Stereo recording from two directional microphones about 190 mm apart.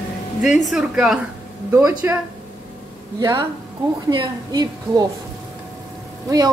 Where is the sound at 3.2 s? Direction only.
20° right (ahead or behind).